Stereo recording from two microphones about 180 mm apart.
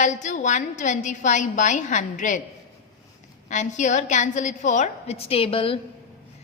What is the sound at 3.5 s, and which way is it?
A woman's voice, 40° left (ahead or behind).